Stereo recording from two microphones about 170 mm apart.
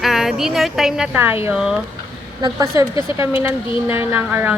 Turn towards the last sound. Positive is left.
turn(degrees=-10)  # may be behind; listen again after turning